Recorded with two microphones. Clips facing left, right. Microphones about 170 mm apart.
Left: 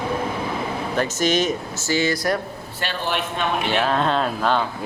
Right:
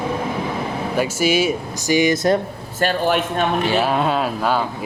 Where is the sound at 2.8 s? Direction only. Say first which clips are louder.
Right 8 dB; 45° right (ahead or behind).